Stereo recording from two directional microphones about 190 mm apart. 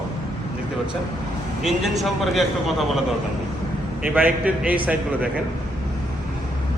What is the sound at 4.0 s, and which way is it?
A man's voice, 10° right (ahead or behind).